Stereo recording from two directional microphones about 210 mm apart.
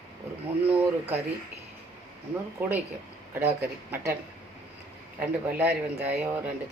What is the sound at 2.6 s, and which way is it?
Speech, 10° right (ahead or behind).